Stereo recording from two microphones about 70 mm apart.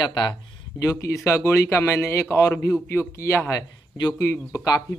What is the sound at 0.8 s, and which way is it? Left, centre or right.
A man's voice, left.